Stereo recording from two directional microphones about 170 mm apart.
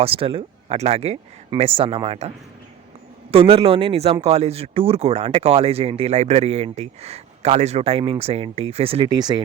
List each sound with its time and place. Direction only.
0.0 s speech: 35° right (ahead or behind)
3.3 s speech: 35° right (ahead or behind)